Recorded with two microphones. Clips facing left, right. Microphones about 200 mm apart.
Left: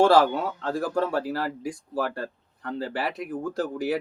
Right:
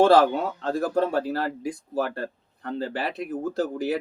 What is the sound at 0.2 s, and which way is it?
Speech, 20° right (ahead or behind).